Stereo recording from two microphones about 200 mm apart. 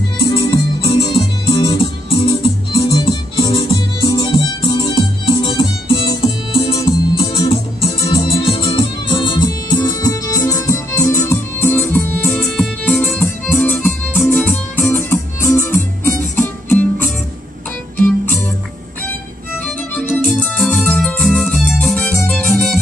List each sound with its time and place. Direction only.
0.2 s music: 25° left (ahead or behind); by 18.3 s 5° left (ahead or behind)
20.2 s music: 5° left (ahead or behind)